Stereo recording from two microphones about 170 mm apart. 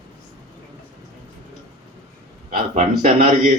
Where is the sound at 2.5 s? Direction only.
50° right (ahead or behind).